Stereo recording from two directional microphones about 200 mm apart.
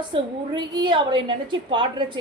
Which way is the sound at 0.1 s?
20° right (ahead or behind).